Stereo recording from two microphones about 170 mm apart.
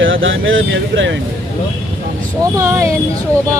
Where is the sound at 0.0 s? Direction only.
90° right.